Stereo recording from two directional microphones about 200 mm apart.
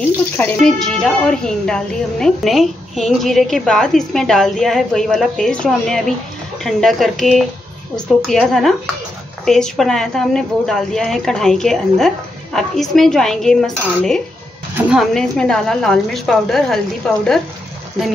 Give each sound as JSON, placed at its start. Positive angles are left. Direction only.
{"t": 0.4, "sound": "a woman's voice", "side_deg": 0}